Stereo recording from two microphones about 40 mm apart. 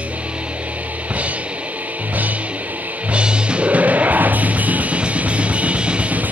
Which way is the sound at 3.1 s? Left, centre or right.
Right.